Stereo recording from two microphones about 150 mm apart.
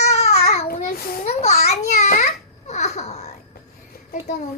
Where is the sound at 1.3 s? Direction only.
45° left (ahead or behind).